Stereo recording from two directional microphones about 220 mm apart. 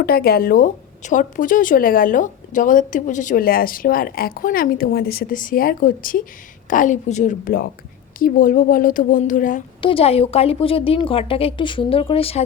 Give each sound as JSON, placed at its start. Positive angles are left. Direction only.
{"t": 0.0, "sound": "a woman's voice", "side_deg": 45}
{"t": 9.8, "sound": "a woman's voice", "side_deg": 25}